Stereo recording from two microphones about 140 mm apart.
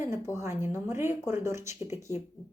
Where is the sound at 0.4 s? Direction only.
15° right (ahead or behind).